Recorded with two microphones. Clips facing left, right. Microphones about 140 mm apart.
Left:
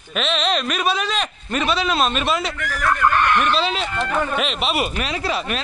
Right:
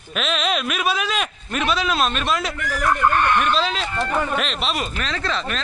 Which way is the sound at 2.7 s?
20° right (ahead or behind).